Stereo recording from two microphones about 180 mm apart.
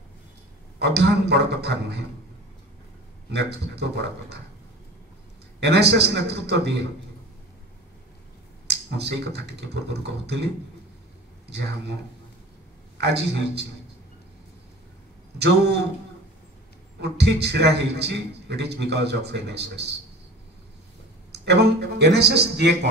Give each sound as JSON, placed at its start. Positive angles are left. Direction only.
{"t": 0.7, "sound": "speech", "side_deg": -70}
{"t": 3.3, "sound": "speech", "side_deg": -70}
{"t": 5.6, "sound": "speech", "side_deg": -65}
{"t": 8.6, "sound": "speech", "side_deg": -65}
{"t": 12.9, "sound": "speech", "side_deg": -65}
{"t": 15.3, "sound": "speech", "side_deg": -70}
{"t": 17.0, "sound": "speech", "side_deg": -65}
{"t": 21.3, "sound": "speech", "side_deg": -65}